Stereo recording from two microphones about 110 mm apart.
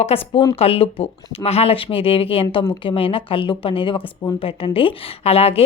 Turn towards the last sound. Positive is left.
turn(degrees=65)  # may be behind; listen again after turning